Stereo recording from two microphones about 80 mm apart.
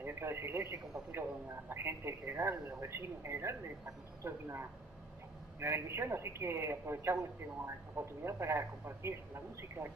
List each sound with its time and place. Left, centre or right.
0.0 s speech: right